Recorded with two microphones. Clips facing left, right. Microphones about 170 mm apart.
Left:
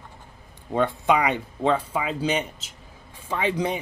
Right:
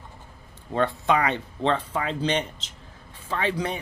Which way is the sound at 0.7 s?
15° left (ahead or behind).